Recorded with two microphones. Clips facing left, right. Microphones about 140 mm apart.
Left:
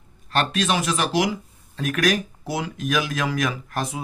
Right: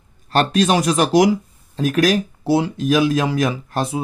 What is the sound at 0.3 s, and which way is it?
Speech, 35° right (ahead or behind).